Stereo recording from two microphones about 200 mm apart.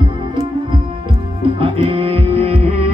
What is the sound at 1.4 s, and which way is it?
Music, 25° right (ahead or behind).